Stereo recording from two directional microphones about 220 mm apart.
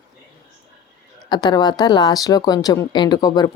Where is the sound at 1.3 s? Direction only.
20° left (ahead or behind).